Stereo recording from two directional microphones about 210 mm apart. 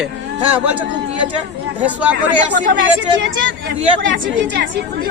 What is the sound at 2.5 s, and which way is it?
Speech, 60° right (ahead or behind).